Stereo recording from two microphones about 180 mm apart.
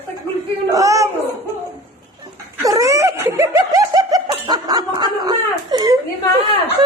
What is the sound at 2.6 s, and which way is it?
Snicker, 20° right (ahead or behind).